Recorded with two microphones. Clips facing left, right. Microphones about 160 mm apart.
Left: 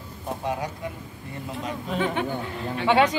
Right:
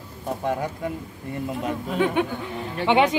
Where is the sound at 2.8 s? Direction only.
20° right (ahead or behind).